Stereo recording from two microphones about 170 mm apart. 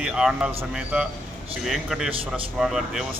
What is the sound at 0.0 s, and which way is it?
Speech, 5° right (ahead or behind).